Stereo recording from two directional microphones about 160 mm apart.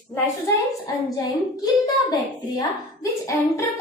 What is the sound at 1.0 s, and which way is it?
A child's voice, 20° left (ahead or behind).